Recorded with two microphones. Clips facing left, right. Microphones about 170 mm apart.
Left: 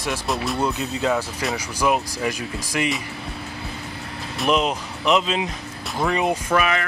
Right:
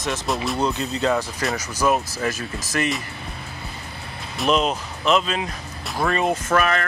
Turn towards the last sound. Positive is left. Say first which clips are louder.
# right 1 dB
turn(degrees=10)  # may be behind; listen again after turning